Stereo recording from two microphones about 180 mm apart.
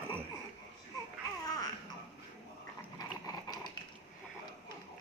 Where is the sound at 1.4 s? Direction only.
20° left (ahead or behind).